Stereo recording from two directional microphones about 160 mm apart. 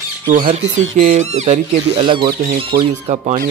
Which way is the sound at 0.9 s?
50° right (ahead or behind).